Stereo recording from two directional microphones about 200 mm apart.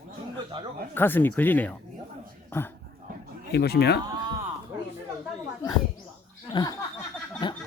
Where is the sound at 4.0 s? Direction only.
20° right (ahead or behind).